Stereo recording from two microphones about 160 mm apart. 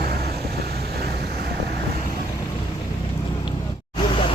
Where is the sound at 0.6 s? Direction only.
85° right.